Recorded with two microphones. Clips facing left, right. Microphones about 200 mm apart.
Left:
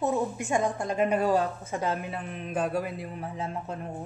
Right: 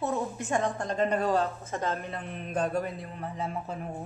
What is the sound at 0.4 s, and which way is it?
Speech, 15° left (ahead or behind).